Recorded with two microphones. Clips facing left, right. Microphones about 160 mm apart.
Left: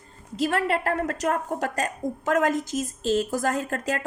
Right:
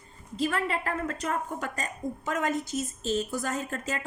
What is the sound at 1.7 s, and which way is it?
A woman's voice, 90° left.